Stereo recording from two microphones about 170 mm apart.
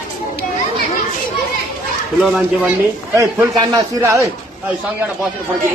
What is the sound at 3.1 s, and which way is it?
A man's voice, 20° right (ahead or behind).